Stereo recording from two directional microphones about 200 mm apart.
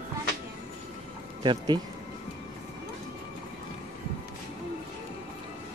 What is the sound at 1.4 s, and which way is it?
Speech, 20° right (ahead or behind).